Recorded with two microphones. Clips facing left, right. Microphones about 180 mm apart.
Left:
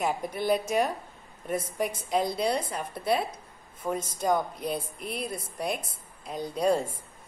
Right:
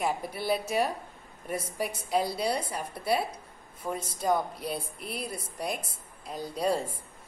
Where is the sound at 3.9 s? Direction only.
45° left (ahead or behind).